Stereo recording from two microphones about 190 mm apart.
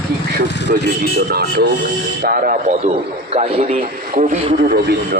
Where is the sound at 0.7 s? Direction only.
50° right (ahead or behind).